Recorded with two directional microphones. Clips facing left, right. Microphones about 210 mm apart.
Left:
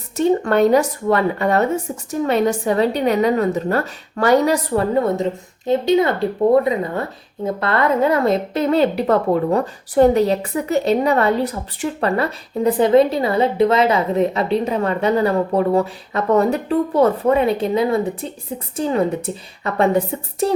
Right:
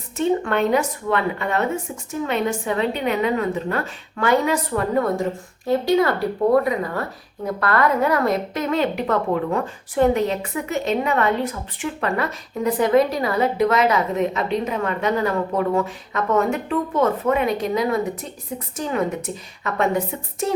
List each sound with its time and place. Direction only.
0.2 s speech: 40° left (ahead or behind)